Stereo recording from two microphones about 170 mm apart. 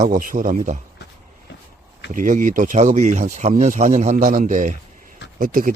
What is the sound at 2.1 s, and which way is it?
Speech, 50° right (ahead or behind).